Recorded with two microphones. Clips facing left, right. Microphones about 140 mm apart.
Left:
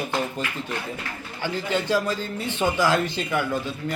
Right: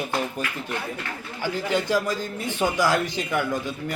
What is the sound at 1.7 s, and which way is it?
Speech, 10° right (ahead or behind).